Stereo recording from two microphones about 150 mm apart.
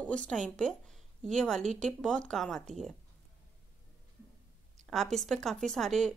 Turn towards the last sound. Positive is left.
turn(degrees=5)  # may be behind; listen again after turning